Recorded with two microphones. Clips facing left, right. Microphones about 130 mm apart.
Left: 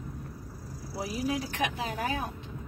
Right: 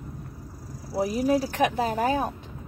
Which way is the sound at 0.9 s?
40° right (ahead or behind).